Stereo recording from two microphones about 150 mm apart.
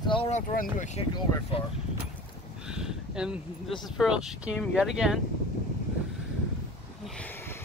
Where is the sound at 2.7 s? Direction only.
5° right (ahead or behind).